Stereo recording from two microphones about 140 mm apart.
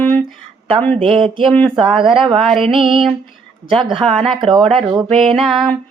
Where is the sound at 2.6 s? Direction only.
40° right (ahead or behind).